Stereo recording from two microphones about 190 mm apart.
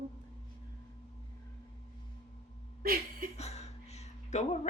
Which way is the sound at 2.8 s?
50° right (ahead or behind).